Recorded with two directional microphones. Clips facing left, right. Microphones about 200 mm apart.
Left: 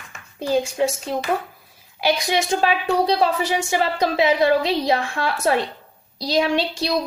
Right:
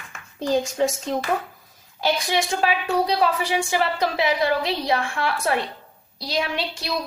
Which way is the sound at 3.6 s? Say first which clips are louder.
Left 2 dB; 20° left (ahead or behind).